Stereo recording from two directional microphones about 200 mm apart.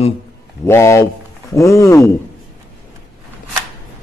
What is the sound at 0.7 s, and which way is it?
Speech, 15° left (ahead or behind).